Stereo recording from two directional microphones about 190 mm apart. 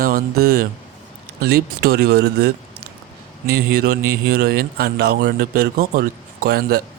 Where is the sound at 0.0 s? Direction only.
50° right (ahead or behind).